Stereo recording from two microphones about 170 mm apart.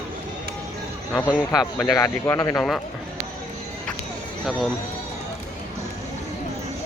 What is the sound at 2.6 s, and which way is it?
Speech, centre (ahead or behind).